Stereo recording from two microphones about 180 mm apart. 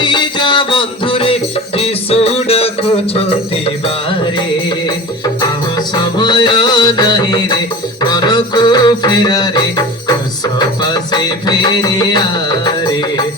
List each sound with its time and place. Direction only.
0.0 s music: 25° left (ahead or behind)
5.4 s music: 20° left (ahead or behind)